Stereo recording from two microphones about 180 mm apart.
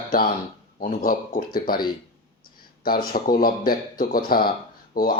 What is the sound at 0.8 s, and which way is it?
Speech, 50° left (ahead or behind).